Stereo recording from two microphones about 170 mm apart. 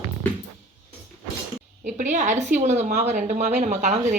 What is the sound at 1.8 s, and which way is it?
A woman's voice, 45° right (ahead or behind).